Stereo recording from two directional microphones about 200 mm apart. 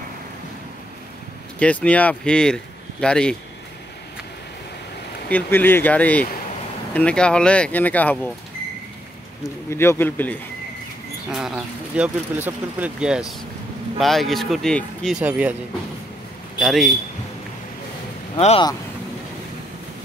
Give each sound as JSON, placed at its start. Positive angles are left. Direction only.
{"t": 1.6, "sound": "speech", "side_deg": 5}
{"t": 5.3, "sound": "speech", "side_deg": 10}
{"t": 9.7, "sound": "speech", "side_deg": 10}
{"t": 11.3, "sound": "speech", "side_deg": -5}
{"t": 16.5, "sound": "a man's voice", "side_deg": 0}
{"t": 18.3, "sound": "speech", "side_deg": 25}